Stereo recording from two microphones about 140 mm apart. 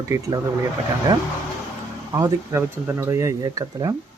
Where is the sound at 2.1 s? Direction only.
25° right (ahead or behind).